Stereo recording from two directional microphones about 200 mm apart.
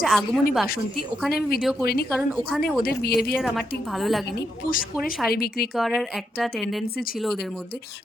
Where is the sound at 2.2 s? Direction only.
Centre (ahead or behind).